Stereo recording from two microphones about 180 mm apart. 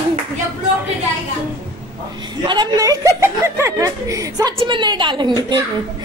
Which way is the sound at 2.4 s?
25° right (ahead or behind).